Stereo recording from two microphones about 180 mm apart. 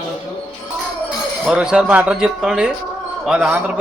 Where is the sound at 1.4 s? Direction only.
5° right (ahead or behind).